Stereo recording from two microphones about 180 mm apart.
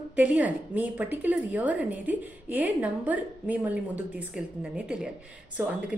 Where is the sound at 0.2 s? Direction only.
10° right (ahead or behind).